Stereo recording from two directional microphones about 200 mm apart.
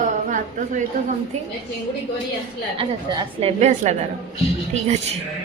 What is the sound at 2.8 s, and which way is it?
A woman's voice, 30° right (ahead or behind).